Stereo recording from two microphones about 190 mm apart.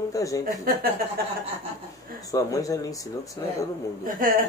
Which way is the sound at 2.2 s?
20° left (ahead or behind).